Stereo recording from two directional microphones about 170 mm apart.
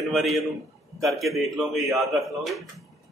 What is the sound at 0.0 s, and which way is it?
A man's voice, centre (ahead or behind).